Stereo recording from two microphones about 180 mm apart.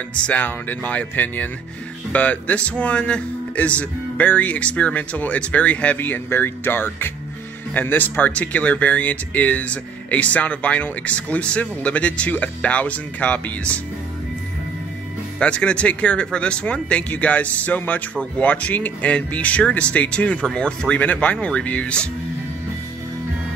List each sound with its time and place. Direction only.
0.2 s speech: 10° left (ahead or behind)
15.3 s speech: 5° left (ahead or behind)